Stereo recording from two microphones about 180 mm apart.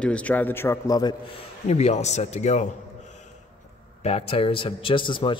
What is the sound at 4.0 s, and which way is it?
A man's voice, 35° left (ahead or behind).